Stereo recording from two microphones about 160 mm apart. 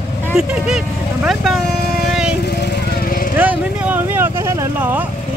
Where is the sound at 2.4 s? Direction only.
85° left; by 3.2 s 65° left (ahead or behind).